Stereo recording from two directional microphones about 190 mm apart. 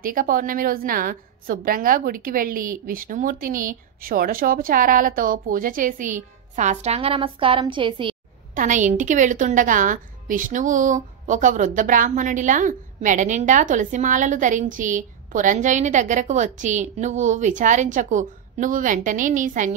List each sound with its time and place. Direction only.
0.0 s a woman's voice: 45° right (ahead or behind); by 8.2 s 25° right (ahead or behind)
8.5 s a woman's voice: 40° right (ahead or behind)